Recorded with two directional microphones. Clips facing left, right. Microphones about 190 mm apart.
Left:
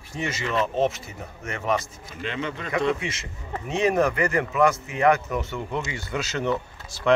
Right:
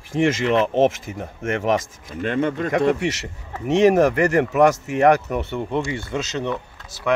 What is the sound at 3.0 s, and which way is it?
Speech, 70° right (ahead or behind).